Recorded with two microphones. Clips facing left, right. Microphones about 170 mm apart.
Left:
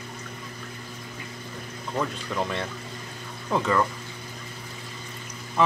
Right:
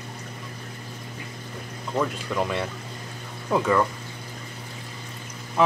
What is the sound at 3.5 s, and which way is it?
Speech, 5° right (ahead or behind).